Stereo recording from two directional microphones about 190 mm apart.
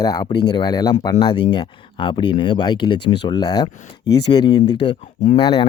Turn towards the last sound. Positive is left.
turn(degrees=25)  # may be behind; listen again after turning